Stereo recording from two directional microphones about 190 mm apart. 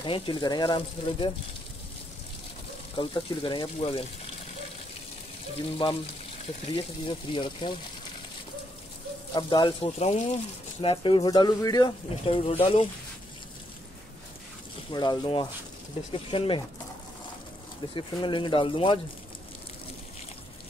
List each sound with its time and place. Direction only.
0.0 s speech: 25° left (ahead or behind)
3.0 s speech: 25° left (ahead or behind)
5.8 s speech: 25° left (ahead or behind)
9.3 s speech: 25° left (ahead or behind)
14.9 s speech: 25° left (ahead or behind)
17.9 s speech: 25° left (ahead or behind)